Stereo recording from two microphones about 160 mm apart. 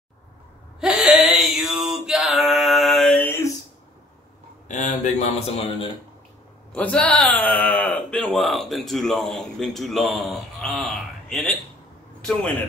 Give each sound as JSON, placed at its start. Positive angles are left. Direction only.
{"t": 0.7, "sound": "a sound", "side_deg": -5}
{"t": 4.6, "sound": "a man's voice", "side_deg": 50}
{"t": 6.7, "sound": "speech", "side_deg": 10}